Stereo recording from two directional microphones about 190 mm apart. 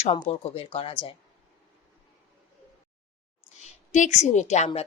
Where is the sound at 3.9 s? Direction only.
40° left (ahead or behind).